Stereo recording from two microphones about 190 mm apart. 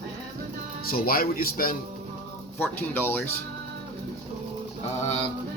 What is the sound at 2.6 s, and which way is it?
Speech, 10° left (ahead or behind).